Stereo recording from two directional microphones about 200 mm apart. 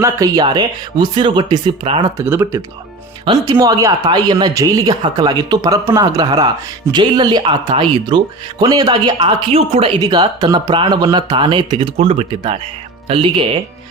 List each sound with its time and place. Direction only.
0.0 s speech: 20° right (ahead or behind)
2.1 s speech: 10° right (ahead or behind)